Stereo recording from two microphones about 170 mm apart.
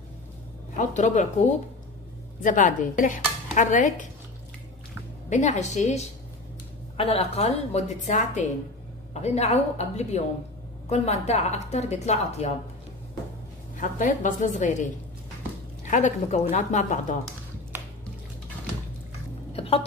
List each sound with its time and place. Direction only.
0.7 s speech: 45° left (ahead or behind)
5.3 s a woman's voice: 45° left (ahead or behind)
13.7 s speech: 50° left (ahead or behind)
15.8 s speech: 45° left (ahead or behind)
19.5 s a sound: 35° left (ahead or behind)